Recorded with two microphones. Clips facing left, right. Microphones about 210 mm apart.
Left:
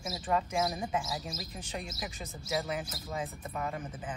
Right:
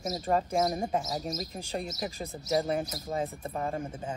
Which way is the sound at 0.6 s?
45° right (ahead or behind).